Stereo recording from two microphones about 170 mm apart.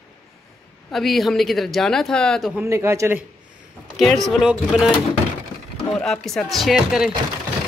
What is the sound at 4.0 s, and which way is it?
Speech, centre (ahead or behind).